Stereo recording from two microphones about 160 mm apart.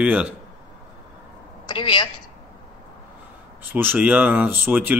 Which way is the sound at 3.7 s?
10° right (ahead or behind).